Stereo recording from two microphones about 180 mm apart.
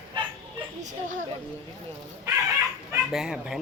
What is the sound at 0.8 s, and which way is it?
Speech, 40° right (ahead or behind).